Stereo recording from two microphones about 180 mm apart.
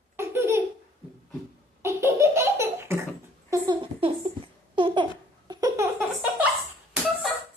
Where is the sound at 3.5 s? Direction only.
25° right (ahead or behind).